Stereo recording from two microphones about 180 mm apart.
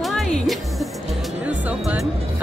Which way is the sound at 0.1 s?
Centre (ahead or behind).